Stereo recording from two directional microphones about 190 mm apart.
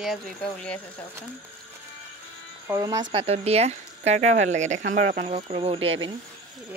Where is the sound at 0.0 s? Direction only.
Centre (ahead or behind).